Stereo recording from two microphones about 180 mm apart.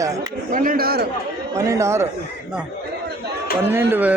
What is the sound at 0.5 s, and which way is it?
Speech, 55° right (ahead or behind).